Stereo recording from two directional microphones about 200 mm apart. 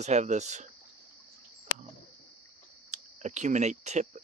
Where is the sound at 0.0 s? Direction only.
35° right (ahead or behind).